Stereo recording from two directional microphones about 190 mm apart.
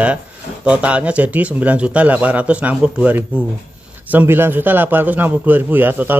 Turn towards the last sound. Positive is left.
turn(degrees=-10)  # may be behind; listen again after turning